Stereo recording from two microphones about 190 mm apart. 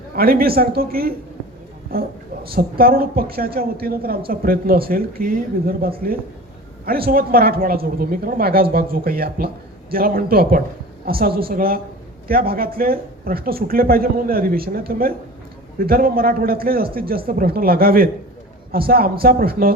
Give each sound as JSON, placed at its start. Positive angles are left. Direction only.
{"t": 0.2, "sound": "speech", "side_deg": -50}